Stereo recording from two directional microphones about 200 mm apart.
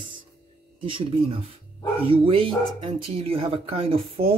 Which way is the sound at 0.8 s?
25° right (ahead or behind).